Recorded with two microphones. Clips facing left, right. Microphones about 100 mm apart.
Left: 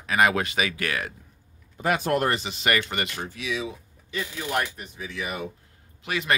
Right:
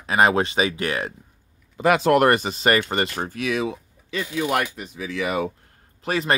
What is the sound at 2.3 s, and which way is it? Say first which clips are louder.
Speech: right 6 dB; 45° right (ahead or behind).